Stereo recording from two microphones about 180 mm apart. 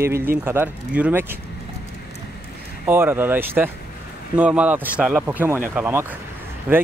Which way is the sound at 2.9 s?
10° right (ahead or behind).